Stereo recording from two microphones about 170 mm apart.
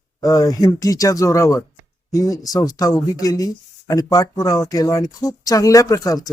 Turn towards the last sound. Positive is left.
turn(degrees=20)  # may be behind; listen again after turning